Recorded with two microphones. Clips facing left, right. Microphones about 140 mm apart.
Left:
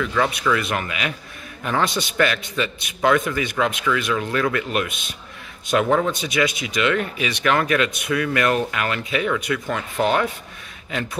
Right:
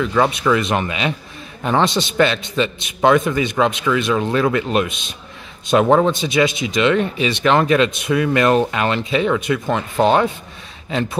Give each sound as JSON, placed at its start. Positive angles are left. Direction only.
{"t": 0.0, "sound": "speech", "side_deg": -25}